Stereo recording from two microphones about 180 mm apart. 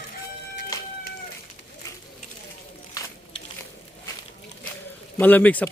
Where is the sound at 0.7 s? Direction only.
20° left (ahead or behind).